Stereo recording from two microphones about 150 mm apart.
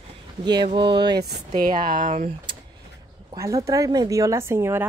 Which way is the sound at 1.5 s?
55° right (ahead or behind).